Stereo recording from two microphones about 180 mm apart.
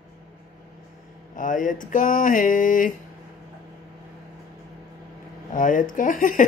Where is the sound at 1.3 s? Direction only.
45° left (ahead or behind).